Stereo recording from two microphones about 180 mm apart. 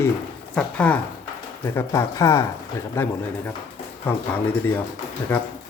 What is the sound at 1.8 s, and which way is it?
A man's voice, 20° left (ahead or behind).